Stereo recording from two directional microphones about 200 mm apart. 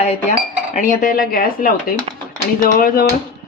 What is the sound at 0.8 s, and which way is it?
Speech, 40° left (ahead or behind).